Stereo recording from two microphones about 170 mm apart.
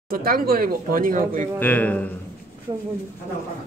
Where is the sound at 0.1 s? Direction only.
60° right (ahead or behind).